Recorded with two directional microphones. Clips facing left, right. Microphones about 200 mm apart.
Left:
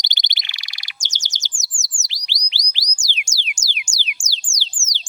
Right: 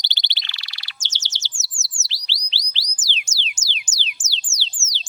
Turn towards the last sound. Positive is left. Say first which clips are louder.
# even
turn(degrees=15)  # may be behind; listen again after turning